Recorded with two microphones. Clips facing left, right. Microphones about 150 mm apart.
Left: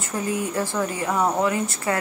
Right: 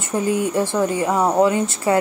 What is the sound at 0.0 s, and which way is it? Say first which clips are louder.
Speech: right 6 dB; 25° right (ahead or behind).